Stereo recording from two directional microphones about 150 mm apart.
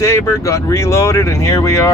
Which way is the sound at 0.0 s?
20° left (ahead or behind).